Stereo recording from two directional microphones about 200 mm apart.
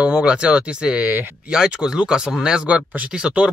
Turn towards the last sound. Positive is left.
turn(degrees=-5)  # may be behind; listen again after turning